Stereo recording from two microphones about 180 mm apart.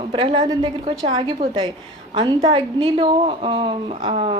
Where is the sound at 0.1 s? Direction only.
30° right (ahead or behind).